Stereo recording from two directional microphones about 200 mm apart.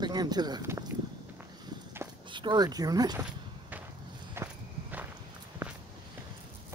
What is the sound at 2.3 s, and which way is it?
Speech, 25° right (ahead or behind).